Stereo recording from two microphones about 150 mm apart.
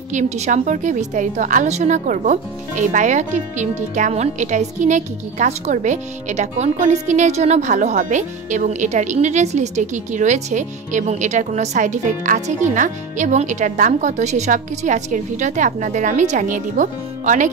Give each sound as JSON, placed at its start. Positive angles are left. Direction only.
{"t": 0.1, "sound": "a woman's voice", "side_deg": -55}